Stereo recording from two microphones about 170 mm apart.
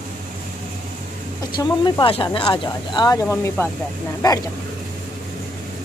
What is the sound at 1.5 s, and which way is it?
Speech, 25° left (ahead or behind).